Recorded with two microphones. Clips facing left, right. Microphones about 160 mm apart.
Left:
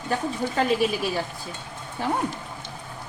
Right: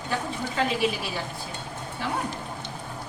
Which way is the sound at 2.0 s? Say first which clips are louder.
Left 5 dB; 45° left (ahead or behind).